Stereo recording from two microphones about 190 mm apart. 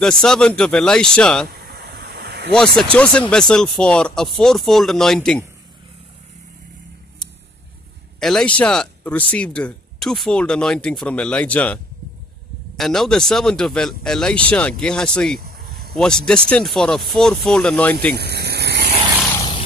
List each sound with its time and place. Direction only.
0.0 s speech: 5° left (ahead or behind)
1.5 s a sound: 55° right (ahead or behind)
2.5 s speech: 5° left (ahead or behind)
8.2 s speech: 5° left (ahead or behind)
15.4 s a sound: 50° right (ahead or behind)
15.9 s speech: 5° left (ahead or behind)
18.1 s speech: 60° right (ahead or behind)